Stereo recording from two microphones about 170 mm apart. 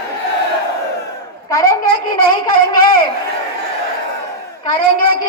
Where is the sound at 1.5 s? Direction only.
20° left (ahead or behind).